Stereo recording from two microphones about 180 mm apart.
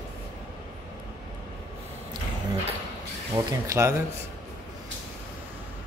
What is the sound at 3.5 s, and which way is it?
Speech, 15° right (ahead or behind).